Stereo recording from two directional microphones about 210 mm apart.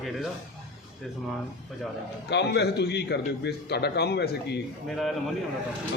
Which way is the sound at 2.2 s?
50° left (ahead or behind).